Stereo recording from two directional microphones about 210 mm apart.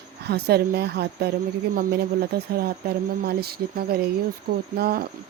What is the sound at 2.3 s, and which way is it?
Speech, 45° right (ahead or behind).